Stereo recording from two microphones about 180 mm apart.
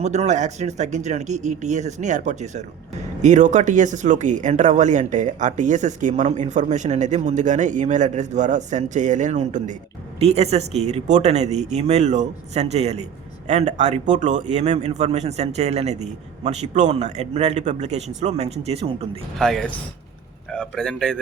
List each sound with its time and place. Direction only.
0.0 s a man's voice: 40° right (ahead or behind)
19.4 s a man's voice: 5° left (ahead or behind)